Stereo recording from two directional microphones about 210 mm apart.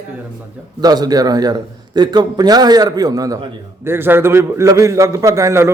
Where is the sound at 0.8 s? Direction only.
20° right (ahead or behind).